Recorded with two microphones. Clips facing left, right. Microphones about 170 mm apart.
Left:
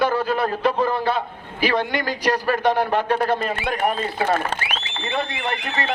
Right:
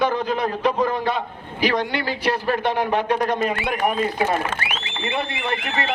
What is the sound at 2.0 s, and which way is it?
Speech, 40° left (ahead or behind).